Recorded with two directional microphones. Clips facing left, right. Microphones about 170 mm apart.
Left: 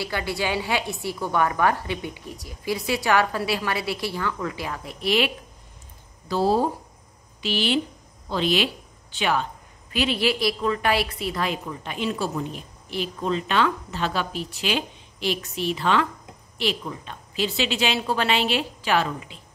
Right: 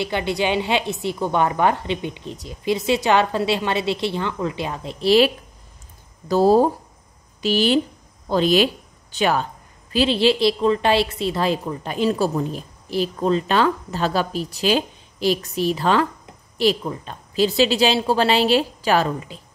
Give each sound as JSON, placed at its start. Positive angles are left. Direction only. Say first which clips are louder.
{"t": 0.0, "sound": "a woman's voice", "louder": "right 5 dB", "side_deg": -20}
{"t": 6.2, "sound": "a woman's voice", "louder": "right 6 dB", "side_deg": -45}
{"t": 9.9, "sound": "a woman's voice", "louder": "right 6 dB", "side_deg": -30}